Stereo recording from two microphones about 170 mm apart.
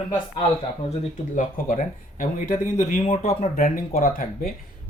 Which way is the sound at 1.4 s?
50° left (ahead or behind).